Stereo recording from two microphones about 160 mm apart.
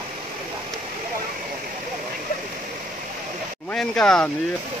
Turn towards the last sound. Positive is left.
turn(degrees=5)  # may be behind; listen again after turning